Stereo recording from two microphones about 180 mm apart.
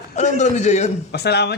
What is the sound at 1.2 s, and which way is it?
Speech, 65° left (ahead or behind).